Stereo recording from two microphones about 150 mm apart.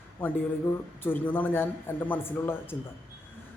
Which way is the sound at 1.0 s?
15° left (ahead or behind).